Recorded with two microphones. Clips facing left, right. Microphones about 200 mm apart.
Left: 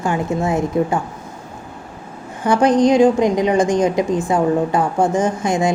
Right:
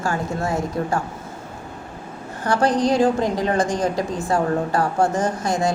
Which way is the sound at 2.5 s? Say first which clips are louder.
Left 5 dB; 15° left (ahead or behind).